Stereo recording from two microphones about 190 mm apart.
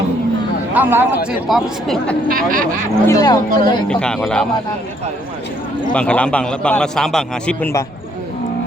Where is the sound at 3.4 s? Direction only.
45° right (ahead or behind).